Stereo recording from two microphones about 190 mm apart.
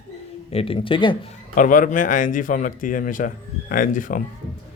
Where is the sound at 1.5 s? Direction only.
45° left (ahead or behind).